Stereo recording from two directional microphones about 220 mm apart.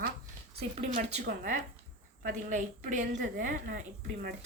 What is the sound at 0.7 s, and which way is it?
Speech, 30° right (ahead or behind).